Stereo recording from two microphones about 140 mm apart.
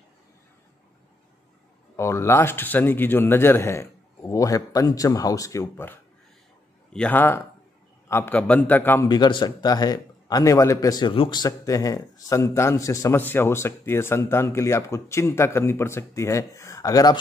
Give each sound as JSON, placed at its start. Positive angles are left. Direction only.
{"t": 2.0, "sound": "a man's voice", "side_deg": 20}
{"t": 9.0, "sound": "a man's voice", "side_deg": 30}